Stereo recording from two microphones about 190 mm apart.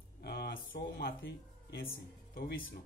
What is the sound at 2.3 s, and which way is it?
Speech, 50° left (ahead or behind).